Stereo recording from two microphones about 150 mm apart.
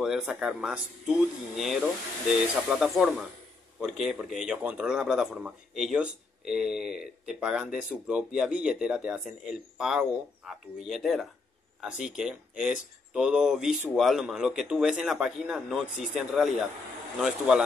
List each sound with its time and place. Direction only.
0.0 s speech: 5° right (ahead or behind)